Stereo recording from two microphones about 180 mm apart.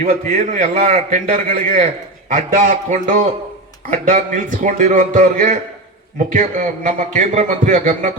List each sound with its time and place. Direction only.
0.0 s a man's voice: 40° right (ahead or behind)